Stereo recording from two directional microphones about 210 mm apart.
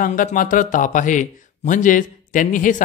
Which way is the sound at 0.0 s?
40° left (ahead or behind).